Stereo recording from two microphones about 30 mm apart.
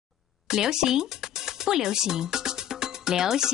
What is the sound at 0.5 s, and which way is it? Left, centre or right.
Speech, centre.